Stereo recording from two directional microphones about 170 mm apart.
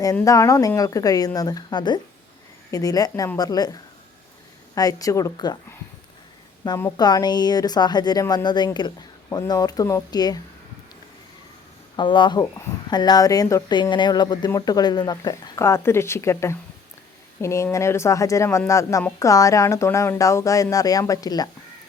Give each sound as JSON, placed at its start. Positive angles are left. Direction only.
{"t": 0.3, "sound": "speech", "side_deg": 20}
{"t": 6.7, "sound": "speech", "side_deg": 20}
{"t": 11.9, "sound": "speech", "side_deg": 30}